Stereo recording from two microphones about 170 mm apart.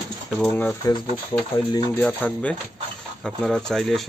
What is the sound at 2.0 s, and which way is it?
Speech, 5° left (ahead or behind).